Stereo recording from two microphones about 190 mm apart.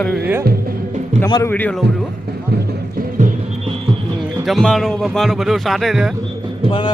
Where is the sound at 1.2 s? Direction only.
15° left (ahead or behind).